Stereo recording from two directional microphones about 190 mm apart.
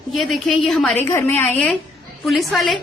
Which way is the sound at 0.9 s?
10° left (ahead or behind).